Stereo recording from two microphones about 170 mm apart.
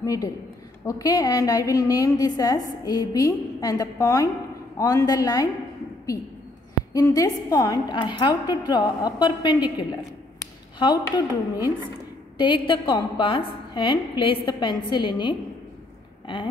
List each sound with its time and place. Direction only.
0.0 s a woman's voice: 20° left (ahead or behind)
6.9 s a woman's voice: 20° left (ahead or behind)